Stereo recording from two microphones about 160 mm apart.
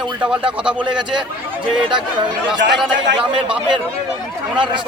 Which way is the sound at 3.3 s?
30° right (ahead or behind).